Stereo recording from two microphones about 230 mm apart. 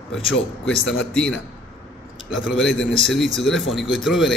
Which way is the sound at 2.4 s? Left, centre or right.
Centre.